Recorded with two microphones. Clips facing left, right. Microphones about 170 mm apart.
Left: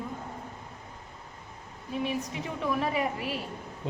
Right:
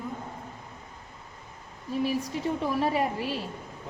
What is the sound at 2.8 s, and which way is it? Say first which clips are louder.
Speech: right 3 dB; 30° right (ahead or behind).